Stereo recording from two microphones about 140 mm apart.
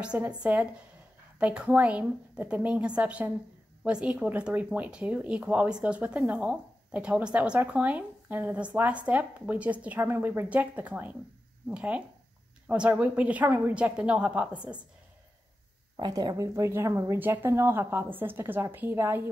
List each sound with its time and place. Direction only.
0.0 s speech: 10° right (ahead or behind)
16.0 s speech: 30° right (ahead or behind)